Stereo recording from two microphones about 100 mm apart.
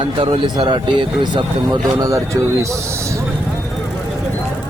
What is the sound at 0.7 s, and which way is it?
Speech, 50° right (ahead or behind).